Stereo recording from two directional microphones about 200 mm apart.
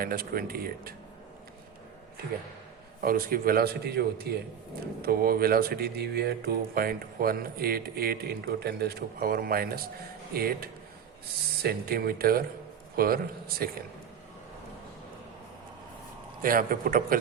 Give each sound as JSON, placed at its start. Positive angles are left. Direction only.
{"t": 0.0, "sound": "speech", "side_deg": -45}
{"t": 3.0, "sound": "speech", "side_deg": -45}
{"t": 16.4, "sound": "speech", "side_deg": -45}